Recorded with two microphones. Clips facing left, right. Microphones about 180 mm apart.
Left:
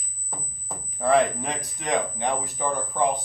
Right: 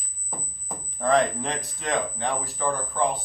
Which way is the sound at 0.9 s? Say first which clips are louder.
Left 1 dB; 10° left (ahead or behind).